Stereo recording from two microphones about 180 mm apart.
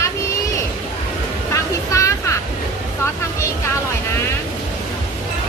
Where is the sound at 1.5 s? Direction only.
15° left (ahead or behind).